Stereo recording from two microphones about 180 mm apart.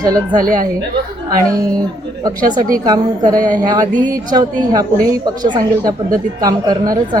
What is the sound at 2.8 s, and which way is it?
Speech, 20° right (ahead or behind).